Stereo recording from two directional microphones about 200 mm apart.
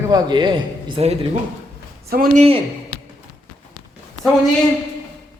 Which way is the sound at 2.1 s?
45° right (ahead or behind).